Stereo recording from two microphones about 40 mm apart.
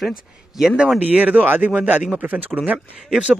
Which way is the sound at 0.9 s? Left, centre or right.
Right.